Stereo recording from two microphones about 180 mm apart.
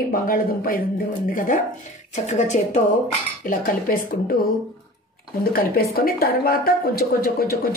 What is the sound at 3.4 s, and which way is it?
Speech, 50° left (ahead or behind).